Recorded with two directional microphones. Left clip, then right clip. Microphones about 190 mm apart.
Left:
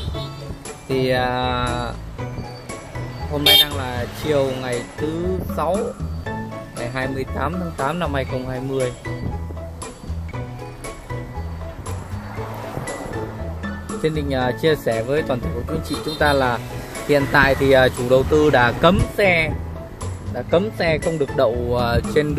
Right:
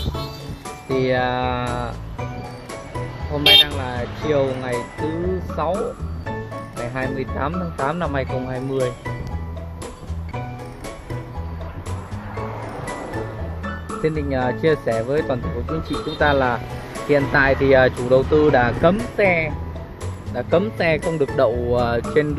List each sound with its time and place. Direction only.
0.8 s speech: 10° left (ahead or behind)
3.3 s speech: 5° left (ahead or behind)
6.9 s speech: 10° left (ahead or behind)
14.0 s speech: 10° left (ahead or behind)
20.3 s speech: centre (ahead or behind)